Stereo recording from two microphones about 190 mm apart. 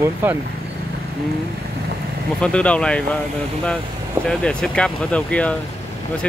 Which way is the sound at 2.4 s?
5° left (ahead or behind).